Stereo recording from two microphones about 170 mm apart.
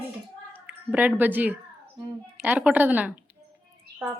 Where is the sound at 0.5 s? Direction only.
10° right (ahead or behind).